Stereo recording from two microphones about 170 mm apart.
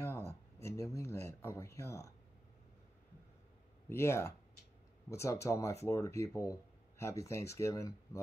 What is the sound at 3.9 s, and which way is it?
Speech, 15° left (ahead or behind).